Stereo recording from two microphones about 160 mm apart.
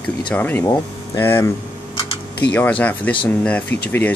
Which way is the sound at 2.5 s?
10° left (ahead or behind).